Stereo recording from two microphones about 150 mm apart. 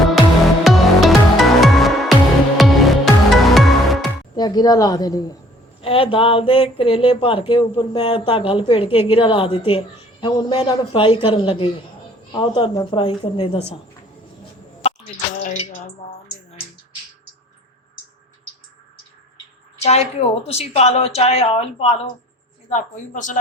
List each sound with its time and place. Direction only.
0.6 s music: centre (ahead or behind)
4.4 s speech: 25° left (ahead or behind)
5.8 s speech: 40° left (ahead or behind)
19.8 s a woman's voice: 45° left (ahead or behind)
22.7 s speech: 55° left (ahead or behind)